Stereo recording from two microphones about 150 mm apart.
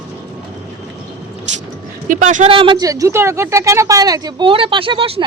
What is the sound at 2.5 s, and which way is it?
A woman's voice, 35° right (ahead or behind).